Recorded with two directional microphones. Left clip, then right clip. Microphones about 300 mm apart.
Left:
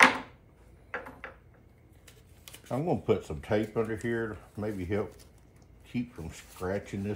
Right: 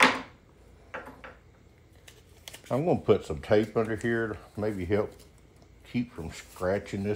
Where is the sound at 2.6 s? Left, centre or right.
Right.